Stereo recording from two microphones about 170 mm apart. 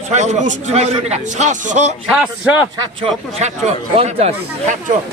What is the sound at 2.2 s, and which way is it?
Speech, 10° right (ahead or behind).